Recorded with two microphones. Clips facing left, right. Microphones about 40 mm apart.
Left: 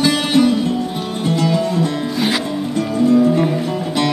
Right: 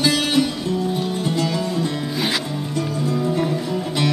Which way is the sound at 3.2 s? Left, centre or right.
Centre.